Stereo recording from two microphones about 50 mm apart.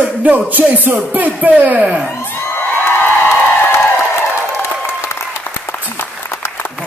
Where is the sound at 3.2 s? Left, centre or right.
Left.